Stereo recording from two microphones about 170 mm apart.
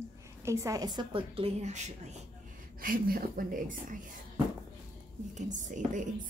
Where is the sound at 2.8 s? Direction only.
60° right (ahead or behind).